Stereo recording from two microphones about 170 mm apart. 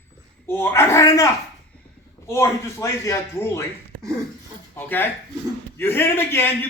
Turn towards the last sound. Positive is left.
turn(degrees=15)  # may be behind; listen again after turning